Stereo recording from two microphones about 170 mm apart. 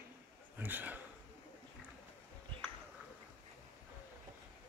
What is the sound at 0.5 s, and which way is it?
Speech, 10° right (ahead or behind).